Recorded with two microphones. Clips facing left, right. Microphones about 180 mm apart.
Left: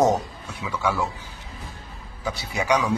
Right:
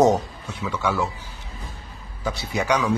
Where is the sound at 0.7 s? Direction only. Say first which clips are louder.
Right 1 dB; centre (ahead or behind).